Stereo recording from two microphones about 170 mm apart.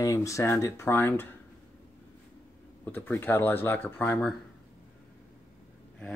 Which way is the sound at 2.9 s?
10° left (ahead or behind).